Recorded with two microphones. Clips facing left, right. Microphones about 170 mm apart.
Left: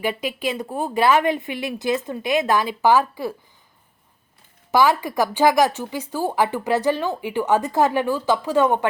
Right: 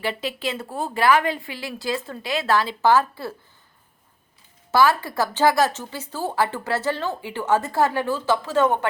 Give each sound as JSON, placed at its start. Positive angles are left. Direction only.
{"t": 0.0, "sound": "a woman's voice", "side_deg": 15}
{"t": 4.7, "sound": "a woman's voice", "side_deg": 15}